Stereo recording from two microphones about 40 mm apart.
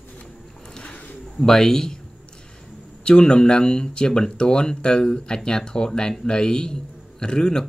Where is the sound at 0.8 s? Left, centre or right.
Left.